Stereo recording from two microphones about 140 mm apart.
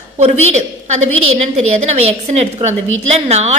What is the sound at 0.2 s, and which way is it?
A woman's voice, 55° right (ahead or behind).